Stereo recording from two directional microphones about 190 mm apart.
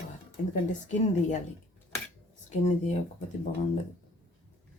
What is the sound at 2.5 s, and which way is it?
Speech, 35° left (ahead or behind).